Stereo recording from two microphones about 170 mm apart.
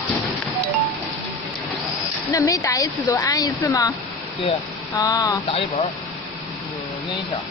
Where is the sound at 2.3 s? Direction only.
20° left (ahead or behind).